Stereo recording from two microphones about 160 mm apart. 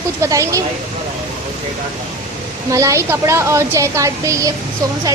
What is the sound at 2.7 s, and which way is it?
A woman's voice, 20° right (ahead or behind).